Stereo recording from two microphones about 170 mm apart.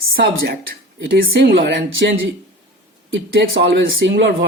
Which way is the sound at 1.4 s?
75° right (ahead or behind).